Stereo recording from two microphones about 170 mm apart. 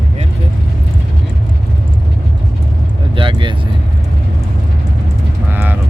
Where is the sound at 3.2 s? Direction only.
30° right (ahead or behind).